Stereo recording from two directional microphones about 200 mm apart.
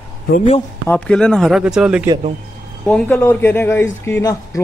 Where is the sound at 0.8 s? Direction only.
5° left (ahead or behind).